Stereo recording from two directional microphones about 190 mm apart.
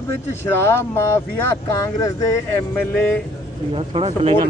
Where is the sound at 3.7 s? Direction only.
30° right (ahead or behind).